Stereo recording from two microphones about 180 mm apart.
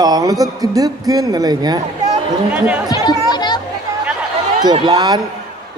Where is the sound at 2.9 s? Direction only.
25° left (ahead or behind).